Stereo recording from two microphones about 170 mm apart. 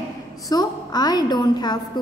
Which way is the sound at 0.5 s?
20° left (ahead or behind).